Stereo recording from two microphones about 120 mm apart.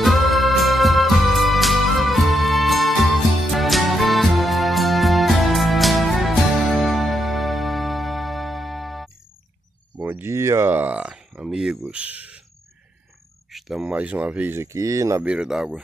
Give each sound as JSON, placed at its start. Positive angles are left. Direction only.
{"t": 0.0, "sound": "music", "side_deg": 0}
{"t": 10.0, "sound": "a sound", "side_deg": -20}
{"t": 11.9, "sound": "speech", "side_deg": -10}
{"t": 13.5, "sound": "speech", "side_deg": 0}
{"t": 15.2, "sound": "speech", "side_deg": -5}